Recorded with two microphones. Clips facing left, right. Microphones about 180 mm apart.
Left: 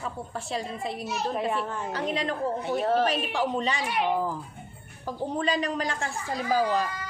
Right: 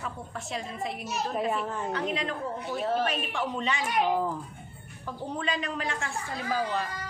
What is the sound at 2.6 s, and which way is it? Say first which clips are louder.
Speech: left 4 dB; 60° left (ahead or behind).